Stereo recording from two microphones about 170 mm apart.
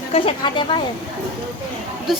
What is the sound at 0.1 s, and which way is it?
Speech, 30° left (ahead or behind).